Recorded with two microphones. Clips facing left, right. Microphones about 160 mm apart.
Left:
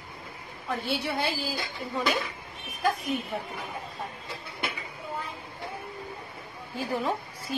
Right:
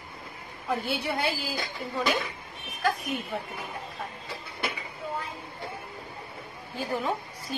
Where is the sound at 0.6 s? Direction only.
Centre (ahead or behind).